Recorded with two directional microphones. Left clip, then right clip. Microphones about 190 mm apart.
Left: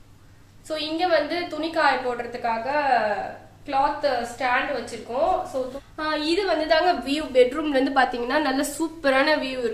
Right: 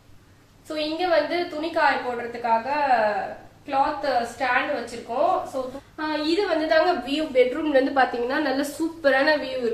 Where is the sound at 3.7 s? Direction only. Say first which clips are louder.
Even; 35° left (ahead or behind).